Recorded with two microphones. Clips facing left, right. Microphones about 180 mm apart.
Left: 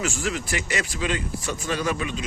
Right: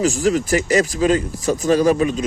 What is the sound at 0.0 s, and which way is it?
Speech, 40° right (ahead or behind).